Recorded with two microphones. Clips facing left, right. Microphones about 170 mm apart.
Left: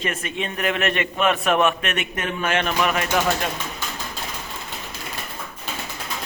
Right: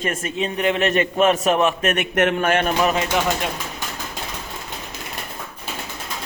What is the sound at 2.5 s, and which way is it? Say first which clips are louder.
Speech: right 4 dB; 45° right (ahead or behind).